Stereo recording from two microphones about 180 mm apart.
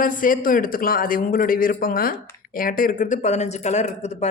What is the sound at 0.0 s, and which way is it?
Speech, 50° left (ahead or behind).